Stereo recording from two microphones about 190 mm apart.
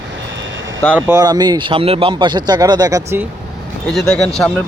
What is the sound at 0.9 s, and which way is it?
Speech, 15° right (ahead or behind).